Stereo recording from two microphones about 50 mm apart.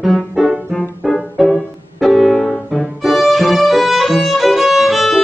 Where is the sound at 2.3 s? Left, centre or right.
Left.